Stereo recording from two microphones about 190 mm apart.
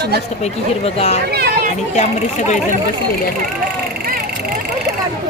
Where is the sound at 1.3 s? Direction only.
55° right (ahead or behind).